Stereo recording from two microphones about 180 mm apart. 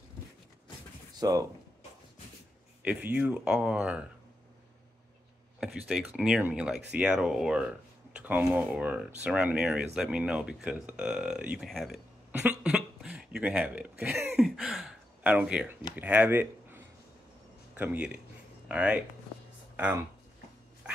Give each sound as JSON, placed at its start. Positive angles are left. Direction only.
{"t": 1.2, "sound": "speech", "side_deg": -20}
{"t": 2.8, "sound": "speech", "side_deg": -10}
{"t": 5.6, "sound": "speech", "side_deg": 0}